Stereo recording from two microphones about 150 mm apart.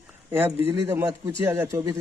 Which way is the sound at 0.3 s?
15° right (ahead or behind).